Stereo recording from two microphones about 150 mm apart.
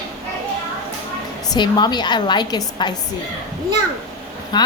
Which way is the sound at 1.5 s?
30° left (ahead or behind).